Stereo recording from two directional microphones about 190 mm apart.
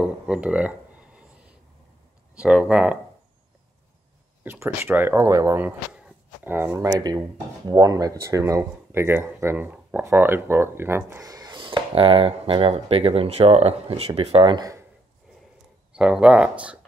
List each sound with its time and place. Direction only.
0.0 s a sound: 5° right (ahead or behind)
2.3 s speech: 5° right (ahead or behind)
4.4 s speech: 10° right (ahead or behind)
15.9 s speech: 5° right (ahead or behind)